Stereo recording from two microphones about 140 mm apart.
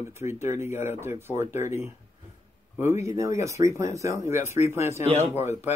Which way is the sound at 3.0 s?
20° right (ahead or behind).